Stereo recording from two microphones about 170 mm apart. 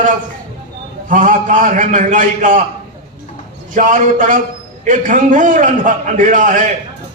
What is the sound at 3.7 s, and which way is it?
A man's voice, 50° right (ahead or behind).